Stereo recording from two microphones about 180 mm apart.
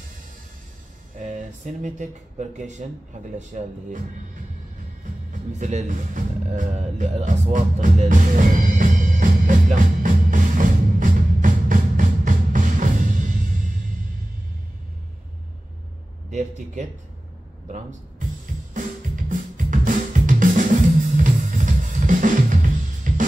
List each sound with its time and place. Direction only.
1.1 s speech: 45° right (ahead or behind)
5.3 s music: 40° right (ahead or behind)
16.3 s speech: 40° right (ahead or behind)
18.7 s drum: 45° right (ahead or behind)
21.2 s drum kit: 45° right (ahead or behind)